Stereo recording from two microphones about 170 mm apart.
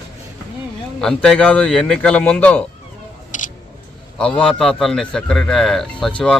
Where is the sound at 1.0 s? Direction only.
5° left (ahead or behind).